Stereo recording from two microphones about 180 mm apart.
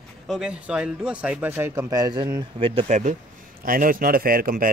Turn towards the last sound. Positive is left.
turn(degrees=-50)  # may be behind; listen again after turning